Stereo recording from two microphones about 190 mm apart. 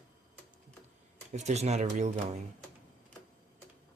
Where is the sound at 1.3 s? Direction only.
35° right (ahead or behind).